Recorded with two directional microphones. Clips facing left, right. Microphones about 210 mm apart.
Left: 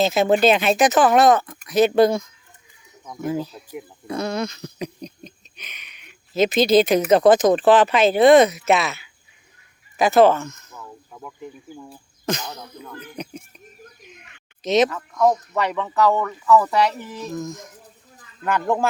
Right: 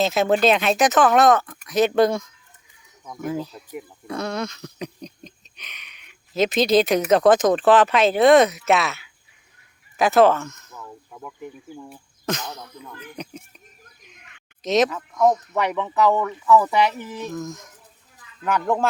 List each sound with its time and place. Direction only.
0.0 s speech: centre (ahead or behind)
14.6 s speech: centre (ahead or behind)
15.7 s speech: 10° right (ahead or behind)